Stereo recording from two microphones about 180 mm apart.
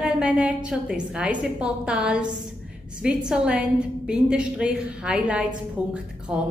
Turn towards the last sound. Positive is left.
turn(degrees=-5)  # may be behind; listen again after turning